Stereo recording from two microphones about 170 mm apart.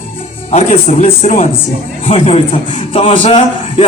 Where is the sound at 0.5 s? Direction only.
40° left (ahead or behind).